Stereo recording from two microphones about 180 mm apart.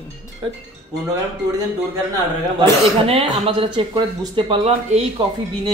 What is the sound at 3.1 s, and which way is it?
Speech, 30° right (ahead or behind).